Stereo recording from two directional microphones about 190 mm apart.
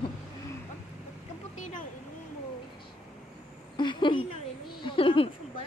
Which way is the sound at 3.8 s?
25° left (ahead or behind).